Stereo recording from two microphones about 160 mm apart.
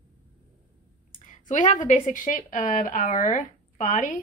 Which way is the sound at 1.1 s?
50° left (ahead or behind).